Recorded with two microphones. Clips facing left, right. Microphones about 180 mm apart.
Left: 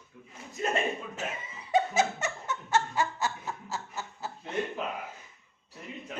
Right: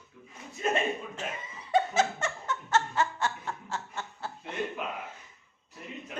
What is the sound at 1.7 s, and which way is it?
Snicker, 10° left (ahead or behind).